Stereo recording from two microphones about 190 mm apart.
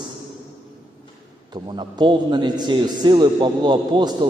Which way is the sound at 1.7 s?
25° right (ahead or behind).